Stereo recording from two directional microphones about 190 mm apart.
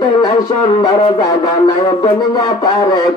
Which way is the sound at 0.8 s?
25° left (ahead or behind).